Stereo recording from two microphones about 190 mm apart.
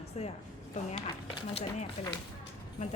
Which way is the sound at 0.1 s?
35° left (ahead or behind).